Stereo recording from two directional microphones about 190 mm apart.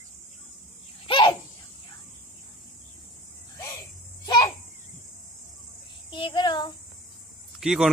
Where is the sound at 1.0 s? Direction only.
25° left (ahead or behind).